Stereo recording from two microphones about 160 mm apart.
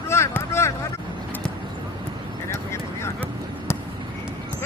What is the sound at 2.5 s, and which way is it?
Vehicle, 15° left (ahead or behind).